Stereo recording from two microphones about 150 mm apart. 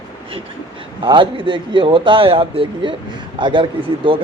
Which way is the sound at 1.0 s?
35° right (ahead or behind).